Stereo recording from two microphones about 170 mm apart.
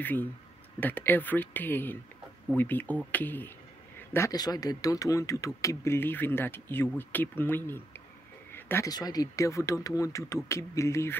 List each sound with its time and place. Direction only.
0.0 s speech: 10° left (ahead or behind)